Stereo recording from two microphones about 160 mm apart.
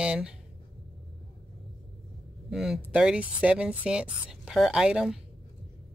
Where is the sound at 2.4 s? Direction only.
5° right (ahead or behind).